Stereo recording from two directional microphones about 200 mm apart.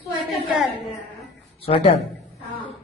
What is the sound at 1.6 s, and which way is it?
Speech, 30° left (ahead or behind).